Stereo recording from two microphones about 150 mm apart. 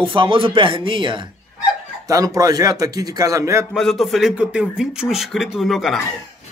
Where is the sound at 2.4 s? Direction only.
25° right (ahead or behind).